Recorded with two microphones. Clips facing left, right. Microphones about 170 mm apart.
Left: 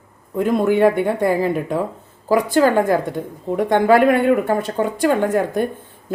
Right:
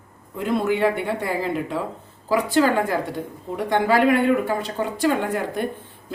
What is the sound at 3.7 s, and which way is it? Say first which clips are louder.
A woman's voice: left 4 dB; 50° left (ahead or behind).